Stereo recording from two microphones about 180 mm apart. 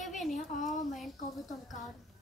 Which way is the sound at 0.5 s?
45° left (ahead or behind).